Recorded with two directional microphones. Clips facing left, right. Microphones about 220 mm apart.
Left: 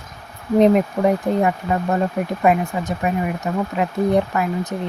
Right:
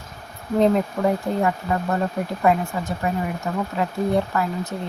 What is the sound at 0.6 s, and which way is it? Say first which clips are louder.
Speech: left 4 dB; 15° left (ahead or behind).